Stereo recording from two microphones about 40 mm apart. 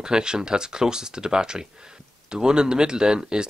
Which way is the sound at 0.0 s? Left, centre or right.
Centre.